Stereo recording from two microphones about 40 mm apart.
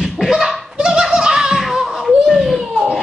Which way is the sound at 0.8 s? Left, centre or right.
Right.